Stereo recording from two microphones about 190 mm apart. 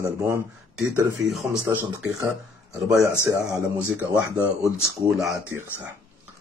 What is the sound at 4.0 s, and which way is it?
Speech, 10° right (ahead or behind).